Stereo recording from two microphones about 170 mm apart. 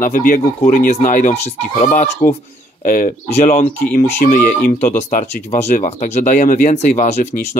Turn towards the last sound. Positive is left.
turn(degrees=45)  # may be behind; listen again after turning